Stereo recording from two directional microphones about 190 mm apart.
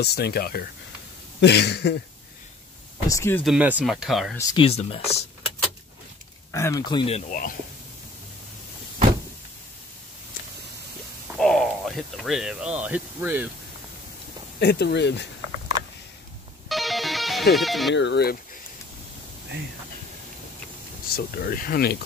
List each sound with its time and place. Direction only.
0.0 s speech: 60° left (ahead or behind)
3.1 s speech: 15° left (ahead or behind)
3.4 s speech: 5° right (ahead or behind)
4.4 s speech: 20° left (ahead or behind)
4.6 s speech: 30° left (ahead or behind)
6.5 s speech: 15° left (ahead or behind); by 7.3 s 35° left (ahead or behind)
11.3 s speech: centre (ahead or behind)
14.6 s speech: 60° left (ahead or behind)
16.6 s music: centre (ahead or behind)
17.9 s speech: 65° left (ahead or behind)
21.1 s speech: 50° left (ahead or behind)